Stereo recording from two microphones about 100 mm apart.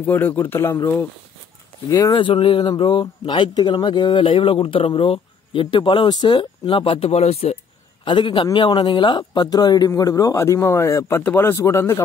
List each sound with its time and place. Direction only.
0.0 s speech: 20° left (ahead or behind); by 2.1 s 35° left (ahead or behind)
2.1 s speech: 60° left (ahead or behind); by 6.4 s 45° left (ahead or behind)
6.6 s speech: 65° left (ahead or behind); by 7.5 s 90° left
8.0 s speech: 55° left (ahead or behind); by 12.0 s 30° left (ahead or behind)